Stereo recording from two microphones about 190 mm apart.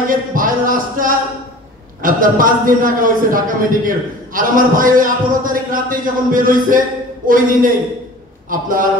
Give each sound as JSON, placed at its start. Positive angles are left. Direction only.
{"t": 0.1, "sound": "a man's voice", "side_deg": -45}